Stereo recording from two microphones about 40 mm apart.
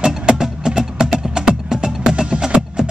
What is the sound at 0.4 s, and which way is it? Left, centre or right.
Music, centre.